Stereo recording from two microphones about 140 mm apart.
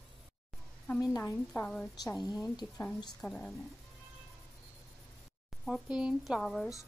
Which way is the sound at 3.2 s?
5° left (ahead or behind).